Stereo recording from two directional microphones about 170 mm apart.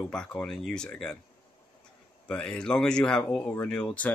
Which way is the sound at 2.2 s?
5° left (ahead or behind).